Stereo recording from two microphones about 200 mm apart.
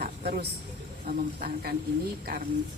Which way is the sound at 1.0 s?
45° right (ahead or behind).